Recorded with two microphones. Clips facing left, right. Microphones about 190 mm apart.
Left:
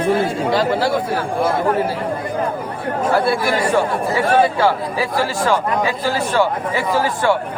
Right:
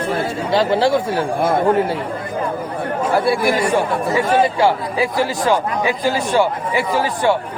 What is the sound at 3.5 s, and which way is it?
Speech, 15° right (ahead or behind).